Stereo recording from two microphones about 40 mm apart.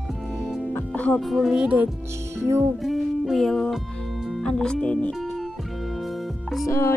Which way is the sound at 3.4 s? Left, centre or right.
Centre.